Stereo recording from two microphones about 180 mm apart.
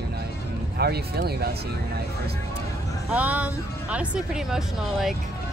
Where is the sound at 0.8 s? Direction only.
60° right (ahead or behind).